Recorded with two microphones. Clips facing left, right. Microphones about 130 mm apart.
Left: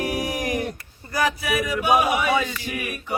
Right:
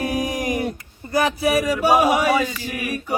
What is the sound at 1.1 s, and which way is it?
Speech, 30° right (ahead or behind).